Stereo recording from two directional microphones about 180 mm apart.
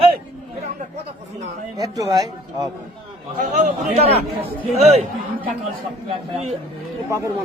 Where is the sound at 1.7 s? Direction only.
20° right (ahead or behind).